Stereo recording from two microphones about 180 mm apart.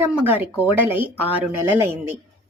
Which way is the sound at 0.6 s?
10° right (ahead or behind).